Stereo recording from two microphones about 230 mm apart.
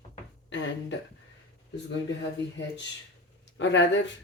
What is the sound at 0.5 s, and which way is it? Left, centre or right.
Speech, left.